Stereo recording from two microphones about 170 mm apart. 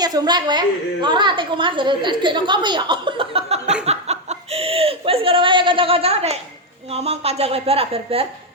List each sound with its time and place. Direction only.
0.0 s a woman's voice: 25° right (ahead or behind)